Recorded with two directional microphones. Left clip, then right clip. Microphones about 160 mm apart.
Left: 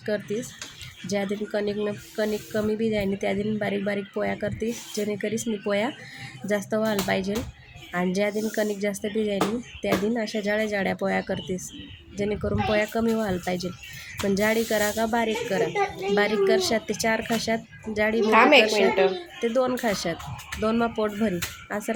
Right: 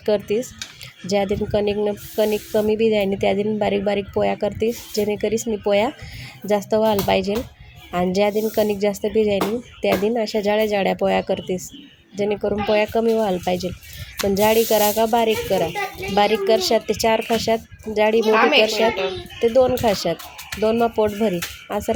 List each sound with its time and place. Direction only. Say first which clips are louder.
0.0 s speech: right 8 dB; 30° right (ahead or behind)
18.3 s a woman's voice: left 2 dB; 20° left (ahead or behind)
19.4 s speech: right 8 dB; 20° right (ahead or behind)